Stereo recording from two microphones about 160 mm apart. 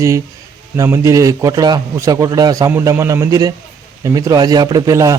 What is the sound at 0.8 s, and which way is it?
A man's voice, 20° right (ahead or behind).